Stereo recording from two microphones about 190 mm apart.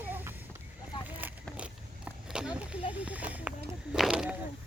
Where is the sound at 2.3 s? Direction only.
5° right (ahead or behind).